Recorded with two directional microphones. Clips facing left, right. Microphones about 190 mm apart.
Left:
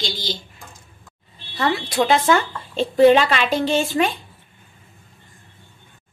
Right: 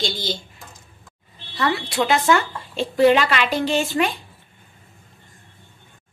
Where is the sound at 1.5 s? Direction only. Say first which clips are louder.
Left 2 dB; 25° left (ahead or behind).